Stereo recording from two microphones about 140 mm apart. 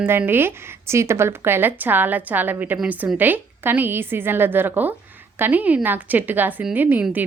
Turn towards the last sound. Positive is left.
turn(degrees=-15)  # may be behind; listen again after turning